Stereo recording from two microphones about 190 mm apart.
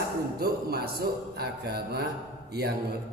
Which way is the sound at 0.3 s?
55° right (ahead or behind).